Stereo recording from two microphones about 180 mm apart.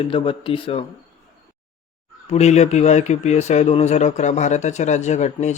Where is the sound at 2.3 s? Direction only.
40° left (ahead or behind).